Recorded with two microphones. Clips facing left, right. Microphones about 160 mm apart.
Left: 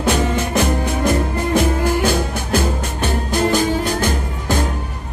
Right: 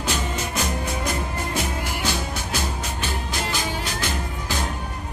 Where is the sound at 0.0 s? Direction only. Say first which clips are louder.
Left 9 dB; 60° left (ahead or behind).